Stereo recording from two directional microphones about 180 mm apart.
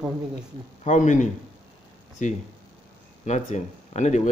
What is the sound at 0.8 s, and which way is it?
A man's voice, 45° left (ahead or behind).